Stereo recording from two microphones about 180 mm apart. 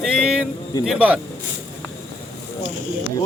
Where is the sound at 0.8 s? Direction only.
5° right (ahead or behind).